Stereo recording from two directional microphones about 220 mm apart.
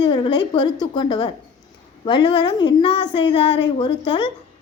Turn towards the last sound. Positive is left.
turn(degrees=20)  # may be behind; listen again after turning